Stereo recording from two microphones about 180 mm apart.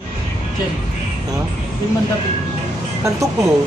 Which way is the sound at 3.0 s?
20° right (ahead or behind).